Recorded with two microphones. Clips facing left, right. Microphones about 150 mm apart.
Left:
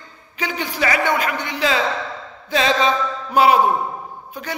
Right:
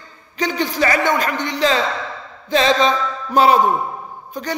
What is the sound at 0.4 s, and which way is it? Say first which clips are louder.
A man's voice: right 4 dB; 10° left (ahead or behind).